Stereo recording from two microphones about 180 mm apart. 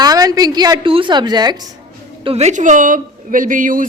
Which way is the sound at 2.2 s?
35° right (ahead or behind).